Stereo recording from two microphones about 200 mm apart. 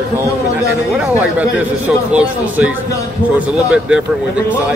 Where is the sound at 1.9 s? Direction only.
5° right (ahead or behind).